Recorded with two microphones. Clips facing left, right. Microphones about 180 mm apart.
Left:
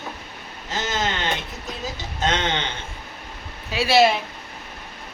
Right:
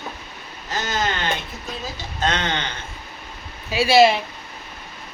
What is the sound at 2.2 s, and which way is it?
Speech, 20° left (ahead or behind).